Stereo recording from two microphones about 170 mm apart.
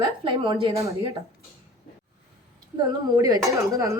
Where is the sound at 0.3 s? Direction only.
30° right (ahead or behind).